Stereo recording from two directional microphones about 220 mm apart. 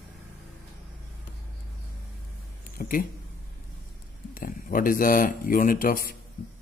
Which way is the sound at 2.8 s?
35° left (ahead or behind).